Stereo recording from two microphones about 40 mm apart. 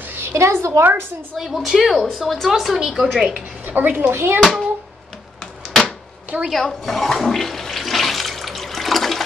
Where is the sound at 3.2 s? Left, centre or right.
Centre.